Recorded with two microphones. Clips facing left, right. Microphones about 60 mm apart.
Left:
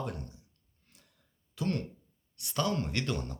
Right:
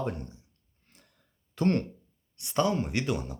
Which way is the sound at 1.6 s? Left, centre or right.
Right.